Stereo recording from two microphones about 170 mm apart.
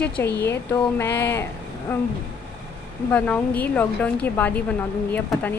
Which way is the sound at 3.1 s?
10° left (ahead or behind).